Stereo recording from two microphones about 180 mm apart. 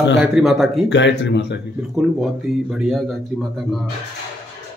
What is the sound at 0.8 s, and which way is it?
Speech, 80° left.